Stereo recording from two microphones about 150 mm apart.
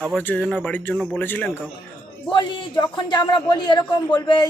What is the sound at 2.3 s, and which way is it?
A man's voice, 30° left (ahead or behind).